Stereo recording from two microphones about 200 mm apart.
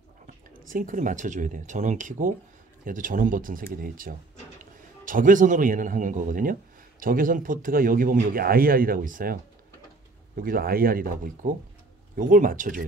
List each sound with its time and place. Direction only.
0.7 s a man's voice: 40° right (ahead or behind)